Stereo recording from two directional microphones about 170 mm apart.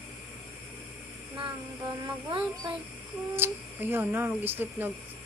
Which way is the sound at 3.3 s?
10° right (ahead or behind).